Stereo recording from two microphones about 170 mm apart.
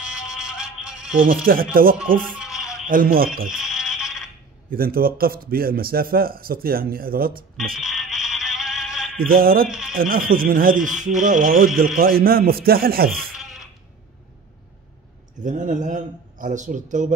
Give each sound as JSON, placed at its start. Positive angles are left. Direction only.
{"t": 0.2, "sound": "music", "side_deg": -5}
{"t": 1.2, "sound": "a man's voice", "side_deg": -55}
{"t": 2.3, "sound": "bleat", "side_deg": -5}
{"t": 2.9, "sound": "a man's voice", "side_deg": -55}
{"t": 3.4, "sound": "a sound", "side_deg": -5}
{"t": 4.6, "sound": "a man's voice", "side_deg": -60}
{"t": 7.8, "sound": "music", "side_deg": -5}
{"t": 9.2, "sound": "a man's voice", "side_deg": -60}
{"t": 9.7, "sound": "speech", "side_deg": -5}
{"t": 9.9, "sound": "a man's voice", "side_deg": -60}
{"t": 15.4, "sound": "a man's voice", "side_deg": -50}